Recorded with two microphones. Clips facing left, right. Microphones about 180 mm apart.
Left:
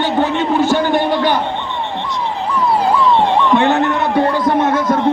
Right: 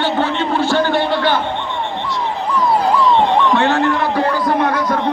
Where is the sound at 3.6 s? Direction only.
20° left (ahead or behind).